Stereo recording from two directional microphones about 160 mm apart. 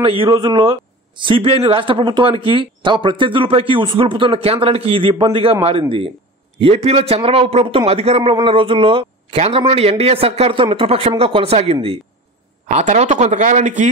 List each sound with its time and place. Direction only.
0.0 s a man's voice: 35° right (ahead or behind); by 13.8 s 50° right (ahead or behind)